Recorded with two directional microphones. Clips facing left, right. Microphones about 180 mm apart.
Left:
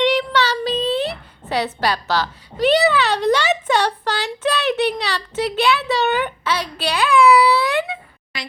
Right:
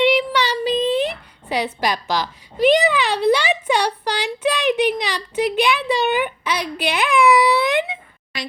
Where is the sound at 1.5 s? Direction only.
10° right (ahead or behind).